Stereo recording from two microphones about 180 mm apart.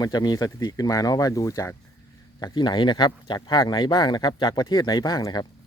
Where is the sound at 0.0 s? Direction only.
20° left (ahead or behind).